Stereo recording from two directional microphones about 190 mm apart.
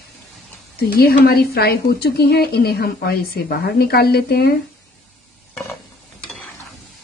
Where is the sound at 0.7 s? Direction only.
55° left (ahead or behind).